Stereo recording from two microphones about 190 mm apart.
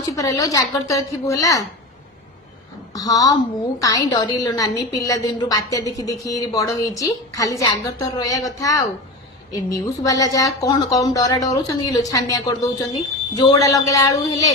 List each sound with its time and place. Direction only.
0.2 s a woman's voice: 15° left (ahead or behind)
2.9 s a woman's voice: 20° left (ahead or behind)